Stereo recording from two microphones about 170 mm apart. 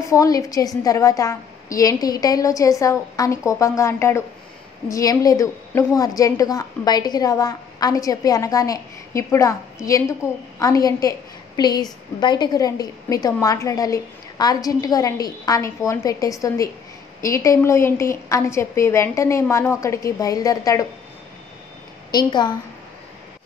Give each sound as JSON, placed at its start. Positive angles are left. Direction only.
{"t": 0.0, "sound": "a woman's voice", "side_deg": 20}
{"t": 22.1, "sound": "a woman's voice", "side_deg": 25}